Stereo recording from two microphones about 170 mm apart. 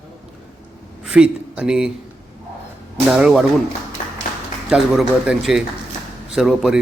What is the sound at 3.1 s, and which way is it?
Speech, 5° right (ahead or behind).